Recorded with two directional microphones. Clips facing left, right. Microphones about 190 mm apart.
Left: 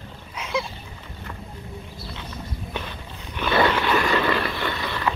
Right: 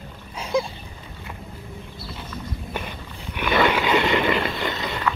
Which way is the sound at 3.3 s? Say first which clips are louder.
Even; 15° right (ahead or behind).